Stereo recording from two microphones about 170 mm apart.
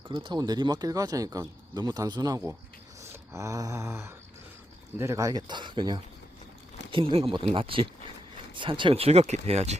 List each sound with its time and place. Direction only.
0.1 s speech: 30° right (ahead or behind)
3.0 s a sound: 15° right (ahead or behind)
4.9 s speech: 20° right (ahead or behind); by 9.7 s 40° right (ahead or behind)